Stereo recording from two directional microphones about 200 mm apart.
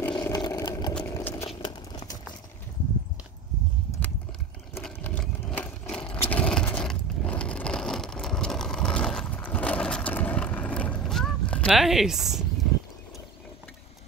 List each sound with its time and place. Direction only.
0.1 s vehicle: 20° left (ahead or behind)
0.9 s sewing machine: 10° left (ahead or behind)
4.7 s vehicle: 10° left (ahead or behind)
6.3 s a sound: 5° left (ahead or behind)